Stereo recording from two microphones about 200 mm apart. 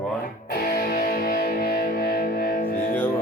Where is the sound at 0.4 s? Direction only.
50° left (ahead or behind).